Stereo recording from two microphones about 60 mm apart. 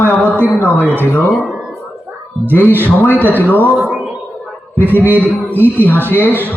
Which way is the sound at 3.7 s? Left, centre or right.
Right.